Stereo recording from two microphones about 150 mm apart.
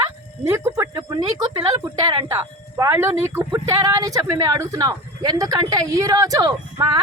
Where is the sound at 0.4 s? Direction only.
20° right (ahead or behind).